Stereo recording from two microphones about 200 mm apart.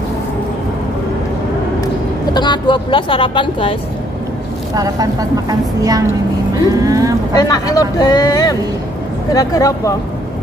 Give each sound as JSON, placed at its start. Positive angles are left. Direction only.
{"t": 2.3, "sound": "speech", "side_deg": 20}
{"t": 4.7, "sound": "a woman's voice", "side_deg": -15}
{"t": 7.3, "sound": "speech", "side_deg": 20}